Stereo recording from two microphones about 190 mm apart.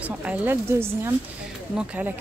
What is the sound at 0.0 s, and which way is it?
Speech, 5° right (ahead or behind).